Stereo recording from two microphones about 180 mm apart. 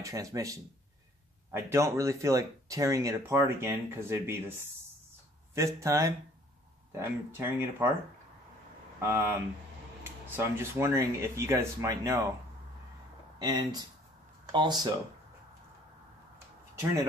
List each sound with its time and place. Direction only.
0.0 s speech: 20° right (ahead or behind)
7.3 s speech: 10° right (ahead or behind)
9.0 s speech: 15° right (ahead or behind)
10.3 s speech: 15° right (ahead or behind)
13.4 s speech: 20° right (ahead or behind)